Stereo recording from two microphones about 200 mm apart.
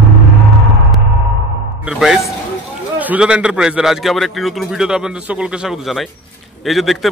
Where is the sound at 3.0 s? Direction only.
5° right (ahead or behind).